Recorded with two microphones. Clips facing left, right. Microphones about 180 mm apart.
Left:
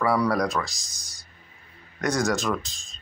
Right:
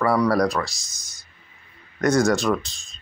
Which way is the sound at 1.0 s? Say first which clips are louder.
Left 1 dB; 35° left (ahead or behind).